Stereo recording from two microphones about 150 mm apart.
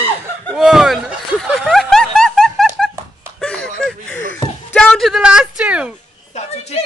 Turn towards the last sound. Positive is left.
turn(degrees=45)  # may be behind; listen again after turning